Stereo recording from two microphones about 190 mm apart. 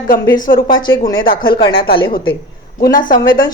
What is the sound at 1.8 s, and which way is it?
Speech, 50° left (ahead or behind).